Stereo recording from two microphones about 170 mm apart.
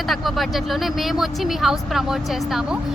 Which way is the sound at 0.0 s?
Centre (ahead or behind).